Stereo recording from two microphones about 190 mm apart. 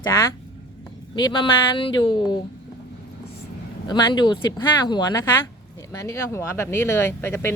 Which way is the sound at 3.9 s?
25° left (ahead or behind).